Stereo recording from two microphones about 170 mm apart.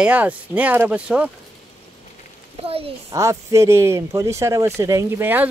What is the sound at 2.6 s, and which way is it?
Speech, 35° right (ahead or behind).